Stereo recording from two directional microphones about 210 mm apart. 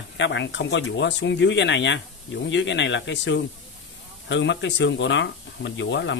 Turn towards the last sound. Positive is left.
turn(degrees=60)  # may be behind; listen again after turning